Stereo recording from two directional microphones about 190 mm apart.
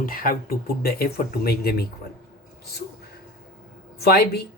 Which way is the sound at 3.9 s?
60° left (ahead or behind).